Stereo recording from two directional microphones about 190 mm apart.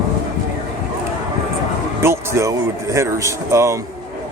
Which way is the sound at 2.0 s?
15° right (ahead or behind).